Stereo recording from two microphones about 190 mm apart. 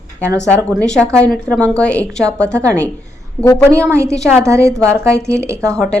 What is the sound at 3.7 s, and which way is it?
Speech, 15° right (ahead or behind).